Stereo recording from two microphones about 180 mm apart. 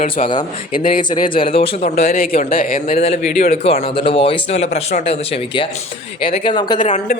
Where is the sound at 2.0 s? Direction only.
55° left (ahead or behind).